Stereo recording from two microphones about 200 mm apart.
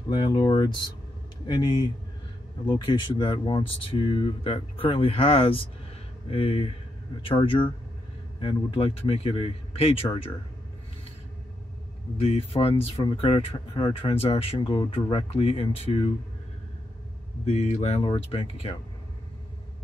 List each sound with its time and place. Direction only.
0.1 s speech: 20° left (ahead or behind)
12.2 s speech: 30° left (ahead or behind)
17.5 s speech: 35° left (ahead or behind)